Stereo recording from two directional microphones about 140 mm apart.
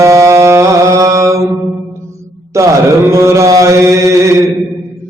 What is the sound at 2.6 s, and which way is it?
Mantra, 20° right (ahead or behind).